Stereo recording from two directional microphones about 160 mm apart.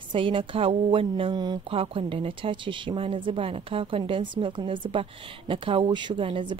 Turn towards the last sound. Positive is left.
turn(degrees=-30)  # may be behind; listen again after turning